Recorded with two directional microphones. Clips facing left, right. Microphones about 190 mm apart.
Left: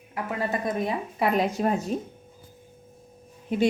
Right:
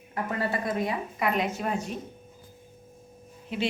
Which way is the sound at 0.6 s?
20° left (ahead or behind).